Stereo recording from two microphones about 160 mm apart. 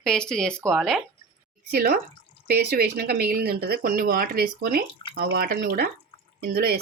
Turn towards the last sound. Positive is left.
turn(degrees=-70)  # may be behind; listen again after turning